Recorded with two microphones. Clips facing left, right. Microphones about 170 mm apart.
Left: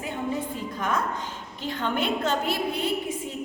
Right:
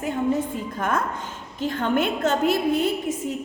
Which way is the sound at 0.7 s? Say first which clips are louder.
Right 2 dB; 50° right (ahead or behind).